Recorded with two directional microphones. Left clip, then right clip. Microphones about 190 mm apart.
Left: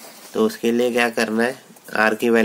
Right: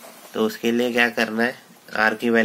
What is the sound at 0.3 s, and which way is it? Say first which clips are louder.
Speech: left 3 dB; 25° left (ahead or behind).